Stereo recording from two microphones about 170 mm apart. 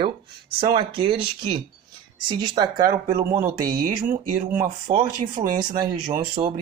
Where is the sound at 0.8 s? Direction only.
30° right (ahead or behind).